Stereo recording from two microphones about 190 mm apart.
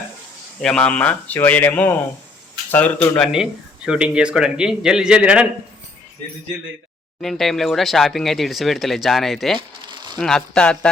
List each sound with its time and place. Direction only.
0.6 s a man's voice: 5° left (ahead or behind)
3.8 s speech: 5° right (ahead or behind)
7.2 s speech: centre (ahead or behind)
9.6 s a sound: 25° right (ahead or behind)
10.2 s speech: 5° left (ahead or behind)